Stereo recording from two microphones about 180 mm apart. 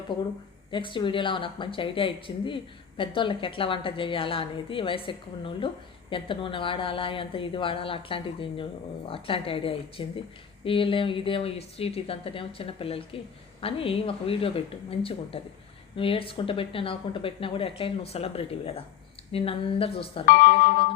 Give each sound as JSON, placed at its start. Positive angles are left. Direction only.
{"t": 0.7, "sound": "a woman's voice", "side_deg": 25}
{"t": 20.2, "sound": "speech", "side_deg": 50}